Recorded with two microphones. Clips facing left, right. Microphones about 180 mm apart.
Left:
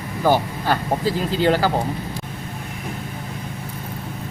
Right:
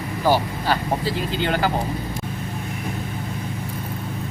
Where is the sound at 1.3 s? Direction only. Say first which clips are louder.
Left 5 dB; 35° left (ahead or behind).